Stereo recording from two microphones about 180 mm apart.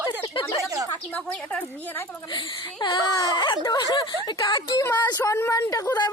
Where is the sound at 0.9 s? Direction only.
10° left (ahead or behind).